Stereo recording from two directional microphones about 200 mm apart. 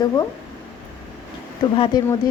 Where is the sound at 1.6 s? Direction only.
25° left (ahead or behind).